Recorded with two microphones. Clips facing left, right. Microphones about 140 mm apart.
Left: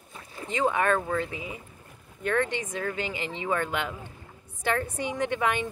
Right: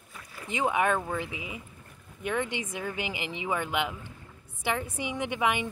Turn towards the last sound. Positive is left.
turn(degrees=-10)  # may be behind; listen again after turning